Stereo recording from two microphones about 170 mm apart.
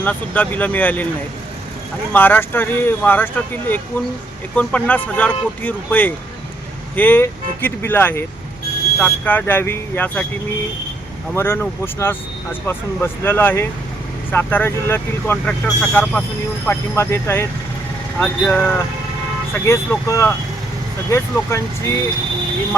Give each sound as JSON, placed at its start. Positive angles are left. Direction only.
{"t": 0.0, "sound": "speech", "side_deg": 10}
{"t": 2.1, "sound": "speech", "side_deg": 10}
{"t": 11.3, "sound": "speech", "side_deg": 15}
{"t": 18.2, "sound": "speech", "side_deg": 5}